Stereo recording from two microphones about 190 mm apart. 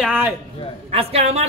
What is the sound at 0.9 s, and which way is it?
Speech, 30° right (ahead or behind).